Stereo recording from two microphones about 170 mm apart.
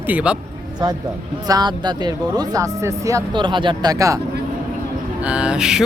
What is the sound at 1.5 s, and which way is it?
Speech, 25° right (ahead or behind).